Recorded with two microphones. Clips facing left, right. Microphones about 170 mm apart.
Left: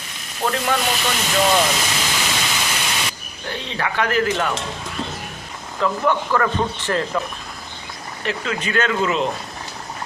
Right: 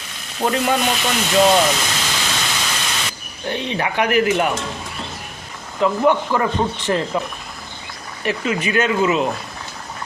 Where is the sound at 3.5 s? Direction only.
15° right (ahead or behind).